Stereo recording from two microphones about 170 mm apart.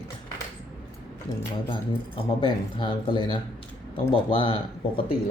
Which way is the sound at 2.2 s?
30° left (ahead or behind).